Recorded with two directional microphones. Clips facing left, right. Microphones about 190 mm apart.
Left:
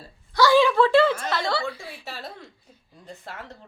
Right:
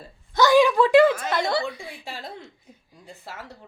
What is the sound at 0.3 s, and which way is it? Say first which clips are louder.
A woman's voice: right 1 dB; 15° right (ahead or behind).